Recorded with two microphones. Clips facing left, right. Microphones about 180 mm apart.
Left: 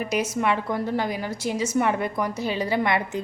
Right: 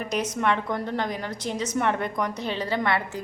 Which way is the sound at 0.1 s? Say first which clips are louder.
Even; 5° left (ahead or behind).